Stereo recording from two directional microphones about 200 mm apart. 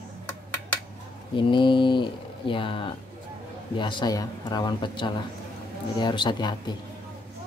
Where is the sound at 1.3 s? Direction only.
25° left (ahead or behind).